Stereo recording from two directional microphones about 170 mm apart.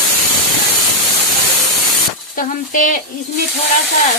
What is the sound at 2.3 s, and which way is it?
Sizzle, 50° left (ahead or behind).